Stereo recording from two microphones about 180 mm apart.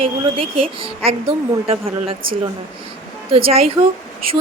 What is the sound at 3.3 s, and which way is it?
Speech, 35° right (ahead or behind).